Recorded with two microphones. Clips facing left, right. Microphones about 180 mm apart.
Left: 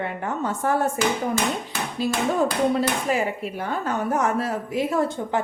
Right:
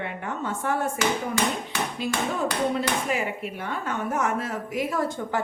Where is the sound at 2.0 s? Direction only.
35° left (ahead or behind).